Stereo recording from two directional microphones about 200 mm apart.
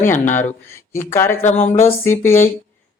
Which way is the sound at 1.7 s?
30° left (ahead or behind).